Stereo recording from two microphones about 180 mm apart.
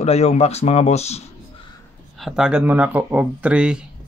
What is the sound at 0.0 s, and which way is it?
Speech, 35° left (ahead or behind).